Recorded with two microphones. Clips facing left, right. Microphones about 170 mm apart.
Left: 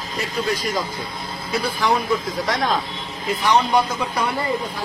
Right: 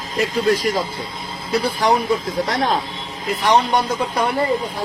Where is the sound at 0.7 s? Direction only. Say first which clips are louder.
Right 2 dB; 25° right (ahead or behind).